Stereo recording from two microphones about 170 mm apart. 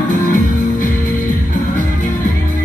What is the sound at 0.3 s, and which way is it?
Music, 50° left (ahead or behind).